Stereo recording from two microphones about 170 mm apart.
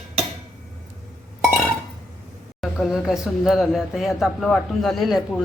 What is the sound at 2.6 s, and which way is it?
Speech, centre (ahead or behind).